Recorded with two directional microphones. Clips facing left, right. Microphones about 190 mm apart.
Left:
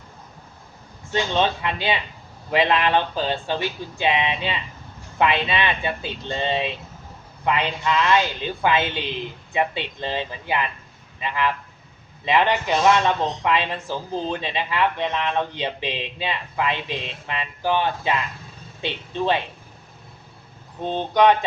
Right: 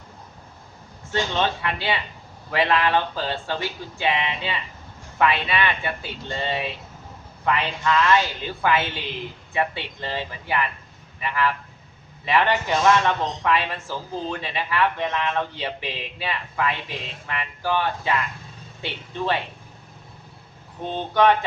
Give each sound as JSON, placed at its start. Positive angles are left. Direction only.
{"t": 1.1, "sound": "speech", "side_deg": 20}
{"t": 20.9, "sound": "speech", "side_deg": 20}